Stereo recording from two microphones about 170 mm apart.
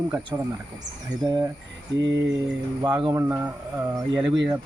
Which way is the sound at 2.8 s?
25° right (ahead or behind).